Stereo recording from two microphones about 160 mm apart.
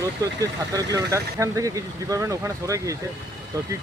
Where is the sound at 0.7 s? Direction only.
20° right (ahead or behind).